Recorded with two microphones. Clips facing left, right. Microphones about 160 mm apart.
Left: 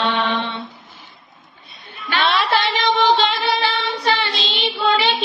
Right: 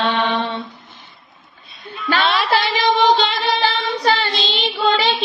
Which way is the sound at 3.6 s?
40° right (ahead or behind).